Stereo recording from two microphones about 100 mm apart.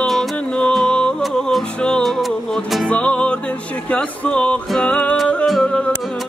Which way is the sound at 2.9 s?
10° left (ahead or behind).